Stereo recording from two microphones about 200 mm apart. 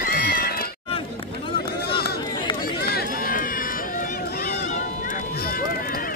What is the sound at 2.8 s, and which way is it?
Run, 50° left (ahead or behind).